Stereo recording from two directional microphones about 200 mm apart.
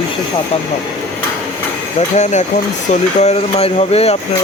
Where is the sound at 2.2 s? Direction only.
35° left (ahead or behind).